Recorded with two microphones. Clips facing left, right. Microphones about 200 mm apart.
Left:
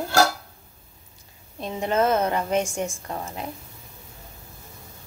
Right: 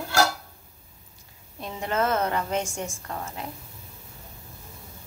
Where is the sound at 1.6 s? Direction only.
20° left (ahead or behind).